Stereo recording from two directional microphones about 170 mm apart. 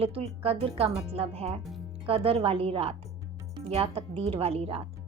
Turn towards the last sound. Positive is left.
turn(degrees=-35)  # may be behind; listen again after turning